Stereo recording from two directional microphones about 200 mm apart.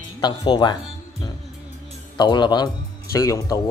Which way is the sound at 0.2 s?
20° left (ahead or behind).